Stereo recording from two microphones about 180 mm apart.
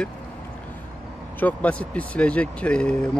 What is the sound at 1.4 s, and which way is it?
Speech, 5° left (ahead or behind).